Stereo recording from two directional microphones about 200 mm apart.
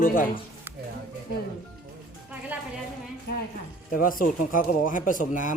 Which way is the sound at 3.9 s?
45° left (ahead or behind).